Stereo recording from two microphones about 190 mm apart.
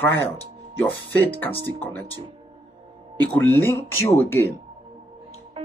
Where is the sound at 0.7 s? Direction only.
10° left (ahead or behind).